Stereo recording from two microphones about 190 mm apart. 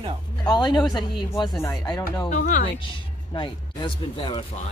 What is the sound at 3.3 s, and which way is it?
Speech, 25° left (ahead or behind).